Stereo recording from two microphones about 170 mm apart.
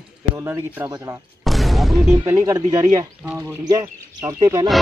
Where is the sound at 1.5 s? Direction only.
Centre (ahead or behind).